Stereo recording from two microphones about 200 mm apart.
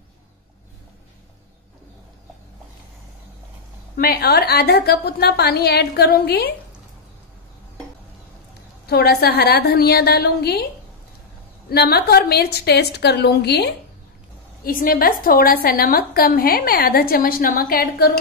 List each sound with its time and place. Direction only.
3.9 s a woman's voice: 50° left (ahead or behind)
8.8 s a woman's voice: 50° left (ahead or behind)
11.7 s a woman's voice: 50° left (ahead or behind)